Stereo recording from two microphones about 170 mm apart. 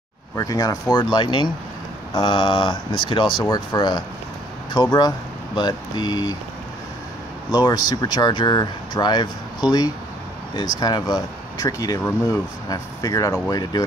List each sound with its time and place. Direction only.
0.4 s speech: 20° left (ahead or behind)
7.5 s speech: 25° left (ahead or behind)